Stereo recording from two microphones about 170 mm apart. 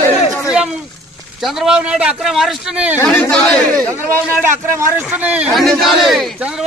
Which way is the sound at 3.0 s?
10° left (ahead or behind).